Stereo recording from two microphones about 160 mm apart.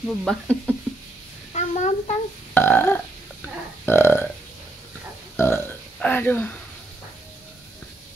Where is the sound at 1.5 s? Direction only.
45° left (ahead or behind).